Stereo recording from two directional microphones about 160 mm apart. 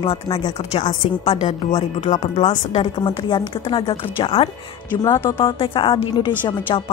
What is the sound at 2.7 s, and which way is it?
A woman's voice, 30° left (ahead or behind).